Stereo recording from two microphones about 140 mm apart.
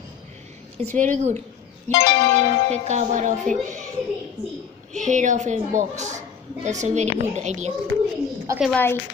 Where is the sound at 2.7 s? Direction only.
60° right (ahead or behind).